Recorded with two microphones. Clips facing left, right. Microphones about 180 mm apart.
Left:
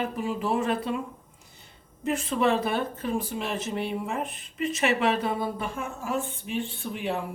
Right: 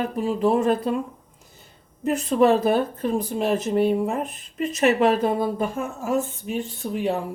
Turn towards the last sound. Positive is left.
turn(degrees=-40)  # may be behind; listen again after turning